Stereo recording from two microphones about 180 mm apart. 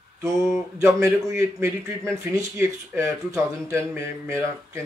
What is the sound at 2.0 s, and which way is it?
Speech, centre (ahead or behind).